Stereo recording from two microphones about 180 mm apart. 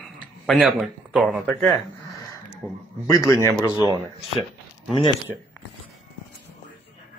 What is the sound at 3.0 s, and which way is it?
Speech, 20° left (ahead or behind).